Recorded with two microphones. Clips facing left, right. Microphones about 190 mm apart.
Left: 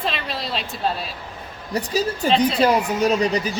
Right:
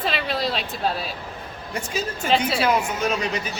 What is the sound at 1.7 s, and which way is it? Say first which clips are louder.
Speech: left 6 dB; 35° left (ahead or behind).